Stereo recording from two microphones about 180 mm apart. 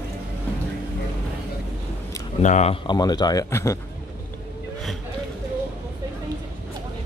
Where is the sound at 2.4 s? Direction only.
40° left (ahead or behind).